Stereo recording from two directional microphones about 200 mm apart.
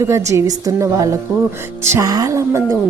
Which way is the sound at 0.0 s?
15° right (ahead or behind).